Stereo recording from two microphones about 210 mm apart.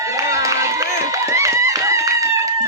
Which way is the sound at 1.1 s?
15° right (ahead or behind).